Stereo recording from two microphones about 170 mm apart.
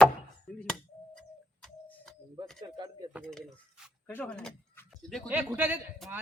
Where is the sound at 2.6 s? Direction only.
25° right (ahead or behind).